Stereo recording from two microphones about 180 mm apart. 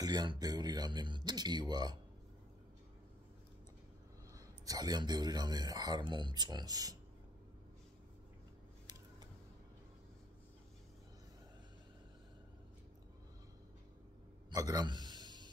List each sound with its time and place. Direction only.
0.0 s speech: 25° right (ahead or behind)
4.3 s speech: 20° right (ahead or behind)
14.5 s a sound: 20° right (ahead or behind)